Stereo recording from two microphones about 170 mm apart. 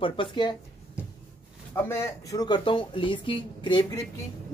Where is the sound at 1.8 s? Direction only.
20° left (ahead or behind).